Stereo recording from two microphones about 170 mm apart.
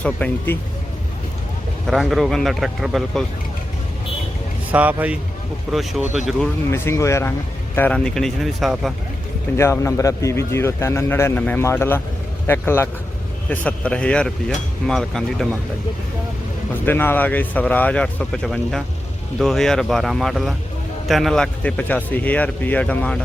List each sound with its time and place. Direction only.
0.0 s a man's voice: 10° left (ahead or behind)
1.9 s speech: centre (ahead or behind)
4.7 s speech: 10° right (ahead or behind)
6.7 s a man's voice: 15° left (ahead or behind); by 8.9 s centre (ahead or behind)
9.6 s a man's voice: 15° left (ahead or behind)
16.7 s a man's voice: 10° left (ahead or behind)